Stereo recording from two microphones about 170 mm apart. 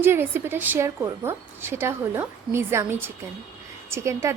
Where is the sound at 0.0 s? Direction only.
15° right (ahead or behind).